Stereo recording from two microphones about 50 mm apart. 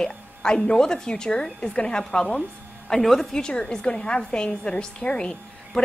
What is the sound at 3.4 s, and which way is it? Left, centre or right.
A woman's voice, centre.